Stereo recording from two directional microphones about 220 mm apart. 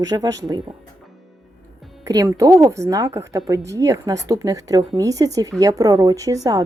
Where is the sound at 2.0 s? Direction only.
15° right (ahead or behind).